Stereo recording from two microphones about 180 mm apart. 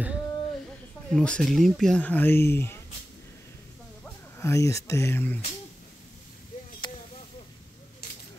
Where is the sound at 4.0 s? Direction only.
15° left (ahead or behind).